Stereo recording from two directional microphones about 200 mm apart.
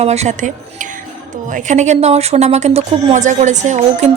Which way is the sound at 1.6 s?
35° right (ahead or behind).